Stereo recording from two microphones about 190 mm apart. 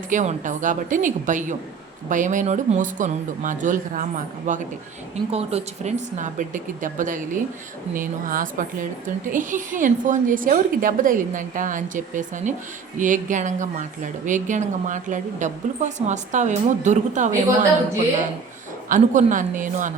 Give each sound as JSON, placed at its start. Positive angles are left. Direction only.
{"t": 0.1, "sound": "a woman's voice", "side_deg": -40}
{"t": 18.9, "sound": "a woman's voice", "side_deg": -45}